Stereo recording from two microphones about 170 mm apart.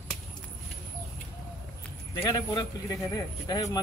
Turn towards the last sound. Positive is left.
turn(degrees=20)  # may be behind; listen again after turning